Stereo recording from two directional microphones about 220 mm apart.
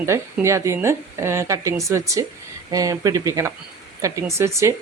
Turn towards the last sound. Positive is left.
turn(degrees=-15)  # may be behind; listen again after turning